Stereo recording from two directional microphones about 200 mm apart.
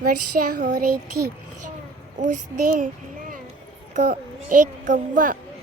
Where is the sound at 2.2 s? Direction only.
40° right (ahead or behind).